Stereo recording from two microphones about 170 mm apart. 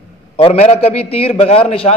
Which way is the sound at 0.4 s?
35° left (ahead or behind).